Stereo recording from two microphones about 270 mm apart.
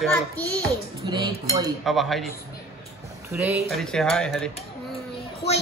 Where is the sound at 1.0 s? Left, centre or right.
Centre.